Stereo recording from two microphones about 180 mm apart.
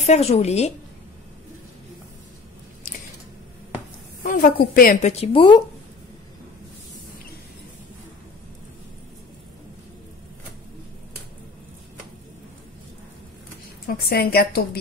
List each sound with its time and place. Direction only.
0.0 s a woman's voice: 35° left (ahead or behind)
4.3 s a woman's voice: 50° left (ahead or behind)
5.2 s speech: 30° left (ahead or behind)
13.8 s a woman's voice: 60° left (ahead or behind)